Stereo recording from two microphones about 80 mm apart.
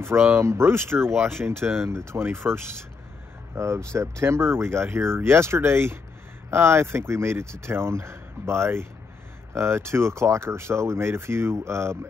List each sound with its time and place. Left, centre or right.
0.4 s speech: right